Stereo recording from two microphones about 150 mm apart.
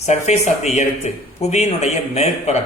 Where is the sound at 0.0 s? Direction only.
45° left (ahead or behind).